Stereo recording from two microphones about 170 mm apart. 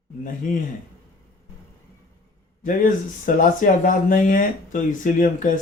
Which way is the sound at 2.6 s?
50° left (ahead or behind).